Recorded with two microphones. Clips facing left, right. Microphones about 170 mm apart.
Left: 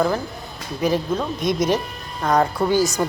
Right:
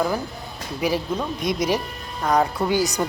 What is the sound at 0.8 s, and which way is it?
Speech, 10° right (ahead or behind).